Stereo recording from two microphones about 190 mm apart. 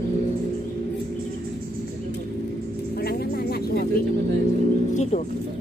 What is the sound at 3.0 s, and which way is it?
Vehicle, 55° left (ahead or behind).